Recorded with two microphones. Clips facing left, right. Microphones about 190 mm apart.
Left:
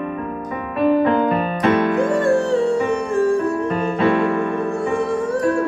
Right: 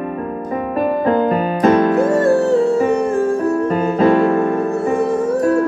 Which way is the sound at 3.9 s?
40° right (ahead or behind).